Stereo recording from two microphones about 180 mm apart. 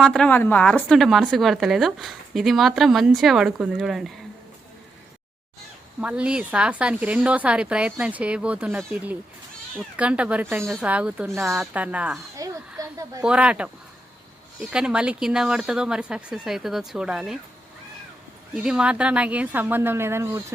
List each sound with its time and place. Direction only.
0.0 s a woman's voice: 5° left (ahead or behind)
6.0 s a woman's voice: 5° right (ahead or behind)
10.0 s a woman's voice: 5° right (ahead or behind)
12.4 s speech: 20° right (ahead or behind)
13.2 s a woman's voice: 5° right (ahead or behind)
18.5 s a woman's voice: 5° right (ahead or behind)